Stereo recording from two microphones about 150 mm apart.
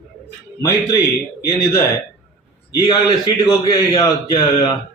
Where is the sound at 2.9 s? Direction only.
30° left (ahead or behind).